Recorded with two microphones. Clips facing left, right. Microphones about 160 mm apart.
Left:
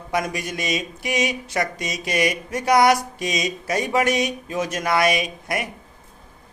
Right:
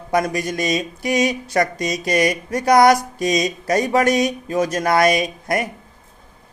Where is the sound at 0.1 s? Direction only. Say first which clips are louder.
Right 5 dB; 40° right (ahead or behind).